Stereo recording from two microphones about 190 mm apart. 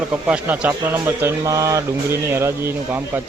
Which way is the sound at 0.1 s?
5° right (ahead or behind).